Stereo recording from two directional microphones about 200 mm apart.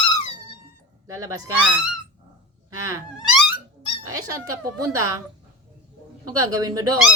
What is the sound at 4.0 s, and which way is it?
Speech, 15° right (ahead or behind).